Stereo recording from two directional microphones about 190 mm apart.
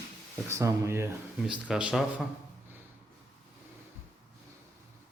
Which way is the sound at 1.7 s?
5° right (ahead or behind).